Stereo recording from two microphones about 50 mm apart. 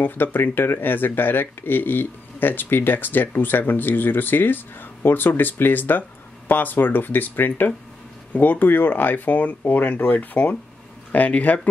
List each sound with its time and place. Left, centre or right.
0.0 s speech: left